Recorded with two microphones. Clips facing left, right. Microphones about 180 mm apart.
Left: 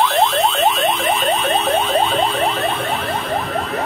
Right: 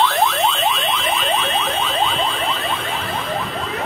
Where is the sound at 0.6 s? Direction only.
45° left (ahead or behind).